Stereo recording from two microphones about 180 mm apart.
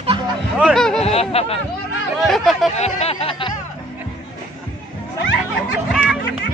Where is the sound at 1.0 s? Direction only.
35° left (ahead or behind).